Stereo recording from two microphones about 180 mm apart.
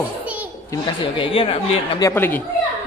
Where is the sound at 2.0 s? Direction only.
10° left (ahead or behind).